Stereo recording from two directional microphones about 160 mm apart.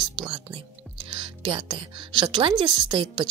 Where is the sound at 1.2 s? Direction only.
30° right (ahead or behind).